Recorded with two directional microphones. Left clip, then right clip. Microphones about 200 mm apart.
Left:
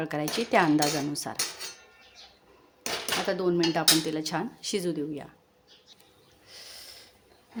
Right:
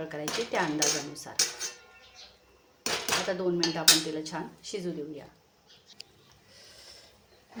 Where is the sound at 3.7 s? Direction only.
50° left (ahead or behind).